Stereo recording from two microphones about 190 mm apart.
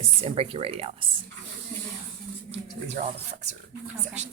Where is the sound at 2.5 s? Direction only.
35° right (ahead or behind).